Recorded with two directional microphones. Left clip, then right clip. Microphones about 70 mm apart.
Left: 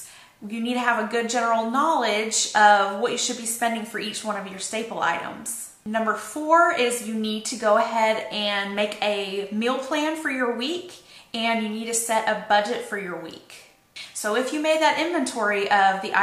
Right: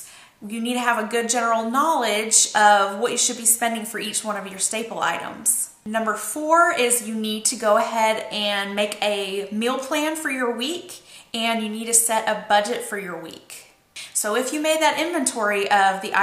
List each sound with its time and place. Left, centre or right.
0.5 s a woman's voice: right
14.2 s a woman's voice: right